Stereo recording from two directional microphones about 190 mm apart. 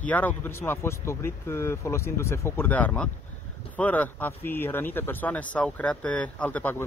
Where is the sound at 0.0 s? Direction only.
10° left (ahead or behind).